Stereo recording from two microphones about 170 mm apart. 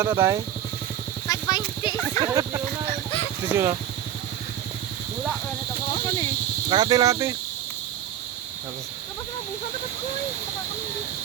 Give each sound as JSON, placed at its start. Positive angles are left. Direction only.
{"t": 0.0, "sound": "speech", "side_deg": -15}
{"t": 1.3, "sound": "horse", "side_deg": 25}
{"t": 2.2, "sound": "speech", "side_deg": -20}
{"t": 6.7, "sound": "speech", "side_deg": -25}